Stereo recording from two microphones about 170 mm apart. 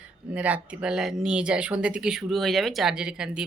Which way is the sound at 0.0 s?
10° right (ahead or behind).